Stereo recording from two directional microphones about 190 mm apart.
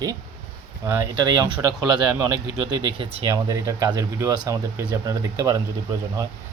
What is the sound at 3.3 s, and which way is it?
Speech, 15° right (ahead or behind).